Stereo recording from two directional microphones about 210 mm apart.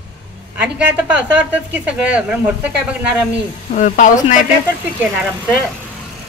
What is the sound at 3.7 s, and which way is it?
Speech, 40° left (ahead or behind).